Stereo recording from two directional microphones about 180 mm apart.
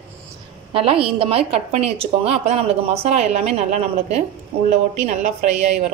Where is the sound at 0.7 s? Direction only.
30° right (ahead or behind).